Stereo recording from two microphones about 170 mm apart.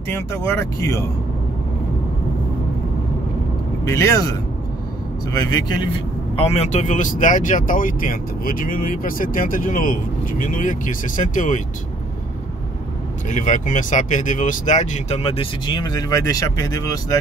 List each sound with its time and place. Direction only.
0.1 s speech: 15° left (ahead or behind)
3.8 s speech: 15° left (ahead or behind); by 11.6 s 50° left (ahead or behind)
13.3 s speech: 45° left (ahead or behind); by 17.2 s 20° left (ahead or behind)